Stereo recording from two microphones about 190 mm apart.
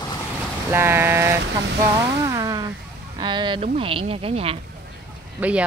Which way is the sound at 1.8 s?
20° right (ahead or behind).